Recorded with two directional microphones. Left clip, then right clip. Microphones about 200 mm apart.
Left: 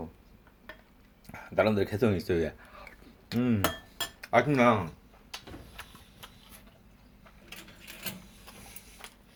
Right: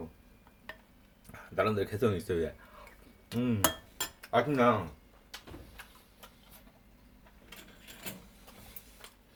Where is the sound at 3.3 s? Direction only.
10° left (ahead or behind).